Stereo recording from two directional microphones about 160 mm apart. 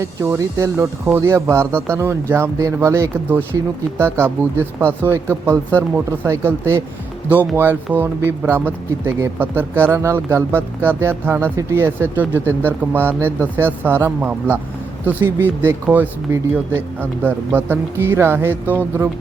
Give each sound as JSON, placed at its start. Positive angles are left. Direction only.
{"t": 0.0, "sound": "speech", "side_deg": -20}